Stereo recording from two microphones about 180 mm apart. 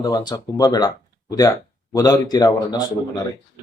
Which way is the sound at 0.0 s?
20° left (ahead or behind).